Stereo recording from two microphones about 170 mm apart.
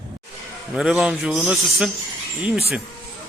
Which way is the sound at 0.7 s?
5° right (ahead or behind).